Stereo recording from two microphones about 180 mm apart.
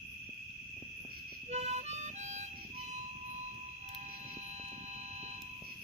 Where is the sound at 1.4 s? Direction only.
40° right (ahead or behind).